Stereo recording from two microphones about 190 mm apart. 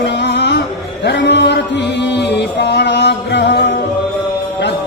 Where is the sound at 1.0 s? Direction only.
65° left (ahead or behind).